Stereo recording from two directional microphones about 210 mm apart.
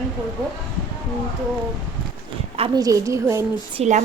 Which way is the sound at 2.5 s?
20° right (ahead or behind).